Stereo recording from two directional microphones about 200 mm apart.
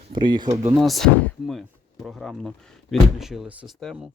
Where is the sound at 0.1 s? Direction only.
25° right (ahead or behind).